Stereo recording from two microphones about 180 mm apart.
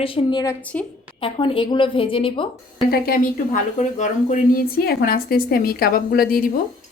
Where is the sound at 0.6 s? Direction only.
5° left (ahead or behind).